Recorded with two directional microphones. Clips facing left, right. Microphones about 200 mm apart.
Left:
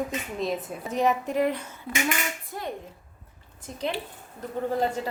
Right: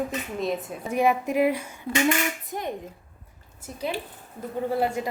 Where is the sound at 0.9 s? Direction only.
10° right (ahead or behind).